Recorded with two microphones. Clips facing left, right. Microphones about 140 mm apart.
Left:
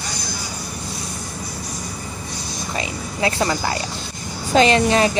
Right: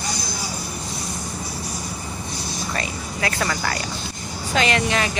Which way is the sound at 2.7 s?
25° left (ahead or behind).